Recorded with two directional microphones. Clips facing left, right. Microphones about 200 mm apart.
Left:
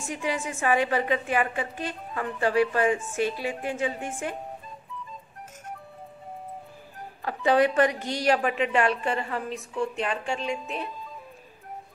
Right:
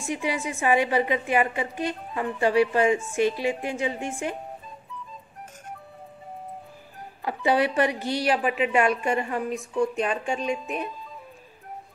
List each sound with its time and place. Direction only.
0.0 s a woman's voice: 10° right (ahead or behind)
7.2 s a woman's voice: 10° right (ahead or behind)